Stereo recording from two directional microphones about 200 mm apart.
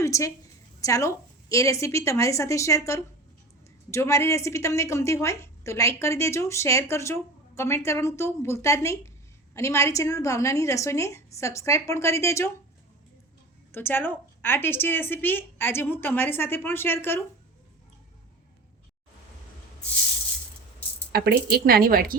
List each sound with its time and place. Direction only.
0.0 s a woman's voice: 15° left (ahead or behind)
13.7 s speech: 10° left (ahead or behind)
21.1 s speech: 50° right (ahead or behind)